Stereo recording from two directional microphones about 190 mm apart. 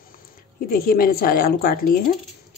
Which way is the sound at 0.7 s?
50° left (ahead or behind).